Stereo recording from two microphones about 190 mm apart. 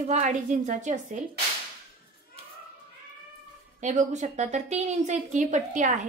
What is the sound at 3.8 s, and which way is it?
A woman's voice, 40° right (ahead or behind).